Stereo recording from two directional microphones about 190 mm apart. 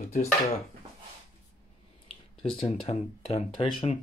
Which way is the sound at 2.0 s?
30° left (ahead or behind).